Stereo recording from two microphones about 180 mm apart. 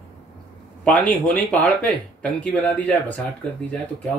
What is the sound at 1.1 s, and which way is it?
A man's voice, 5° left (ahead or behind).